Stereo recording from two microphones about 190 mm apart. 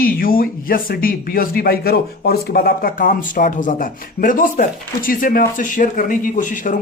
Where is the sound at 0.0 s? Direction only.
50° left (ahead or behind).